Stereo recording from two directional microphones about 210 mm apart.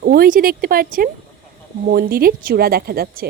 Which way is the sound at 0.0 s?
45° right (ahead or behind).